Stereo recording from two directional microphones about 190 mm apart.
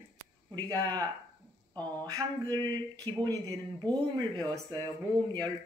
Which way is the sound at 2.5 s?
20° right (ahead or behind).